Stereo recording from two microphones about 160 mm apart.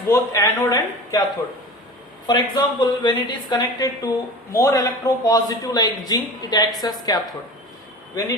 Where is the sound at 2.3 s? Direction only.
25° left (ahead or behind).